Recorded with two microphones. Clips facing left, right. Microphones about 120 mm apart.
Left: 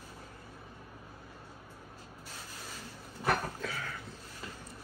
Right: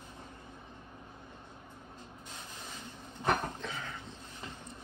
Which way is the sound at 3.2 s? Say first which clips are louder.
Even; 20° right (ahead or behind).